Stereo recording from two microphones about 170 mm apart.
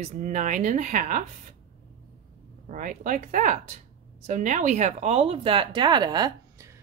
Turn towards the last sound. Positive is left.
turn(degrees=-20)  # may be behind; listen again after turning